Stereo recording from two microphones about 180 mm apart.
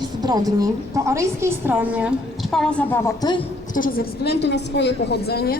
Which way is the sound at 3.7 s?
50° left (ahead or behind).